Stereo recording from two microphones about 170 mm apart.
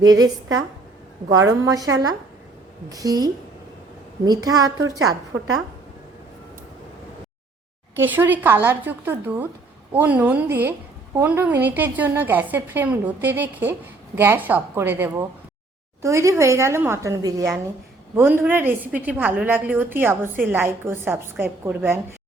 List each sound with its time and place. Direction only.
0.0 s a woman's voice: 20° right (ahead or behind)
7.9 s a woman's voice: 10° right (ahead or behind)